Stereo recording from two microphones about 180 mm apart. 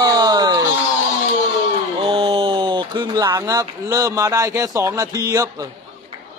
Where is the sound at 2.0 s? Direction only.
30° right (ahead or behind).